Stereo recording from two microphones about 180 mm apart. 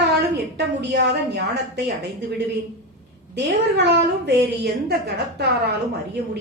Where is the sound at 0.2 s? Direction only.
65° right (ahead or behind).